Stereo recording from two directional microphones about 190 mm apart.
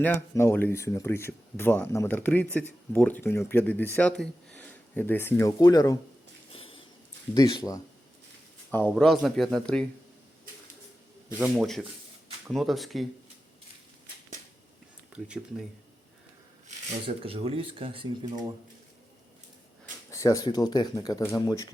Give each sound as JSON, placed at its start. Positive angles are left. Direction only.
{"t": 0.0, "sound": "speech", "side_deg": 10}
{"t": 6.5, "sound": "a sound", "side_deg": 30}
{"t": 7.3, "sound": "speech", "side_deg": 20}
{"t": 8.7, "sound": "speech", "side_deg": 5}
{"t": 11.3, "sound": "speech", "side_deg": -5}
{"t": 15.1, "sound": "speech", "side_deg": -5}
{"t": 16.6, "sound": "speech", "side_deg": -30}
{"t": 19.8, "sound": "speech", "side_deg": 15}